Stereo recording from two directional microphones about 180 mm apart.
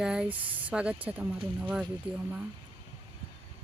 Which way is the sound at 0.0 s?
5° right (ahead or behind).